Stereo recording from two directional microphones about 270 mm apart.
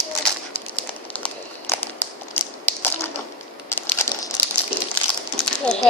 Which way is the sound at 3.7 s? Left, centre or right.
Centre.